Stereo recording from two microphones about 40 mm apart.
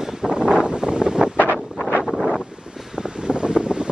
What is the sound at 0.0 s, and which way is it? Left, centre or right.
Wind noise, right.